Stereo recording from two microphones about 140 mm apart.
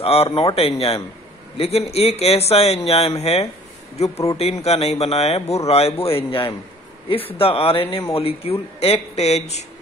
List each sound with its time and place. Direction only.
0.0 s speech: 45° left (ahead or behind)